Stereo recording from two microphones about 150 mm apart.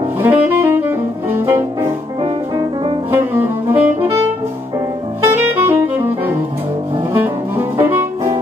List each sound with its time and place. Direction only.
0.2 s saxophone: 15° right (ahead or behind)
2.5 s music: 40° right (ahead or behind)
3.1 s music: 15° right (ahead or behind)
5.2 s saxophone: 15° right (ahead or behind)
7.0 s music: 15° right (ahead or behind)